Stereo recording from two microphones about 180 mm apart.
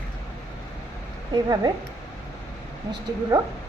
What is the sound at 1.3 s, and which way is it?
Speech, 20° right (ahead or behind).